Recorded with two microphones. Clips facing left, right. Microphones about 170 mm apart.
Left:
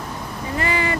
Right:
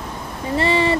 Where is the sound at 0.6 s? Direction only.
30° right (ahead or behind).